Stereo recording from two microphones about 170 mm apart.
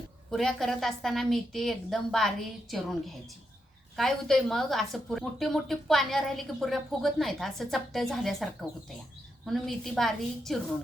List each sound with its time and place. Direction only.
0.3 s a woman's voice: centre (ahead or behind)
9.5 s a woman's voice: centre (ahead or behind)